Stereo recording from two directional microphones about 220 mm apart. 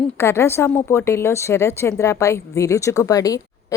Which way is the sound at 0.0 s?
10° left (ahead or behind).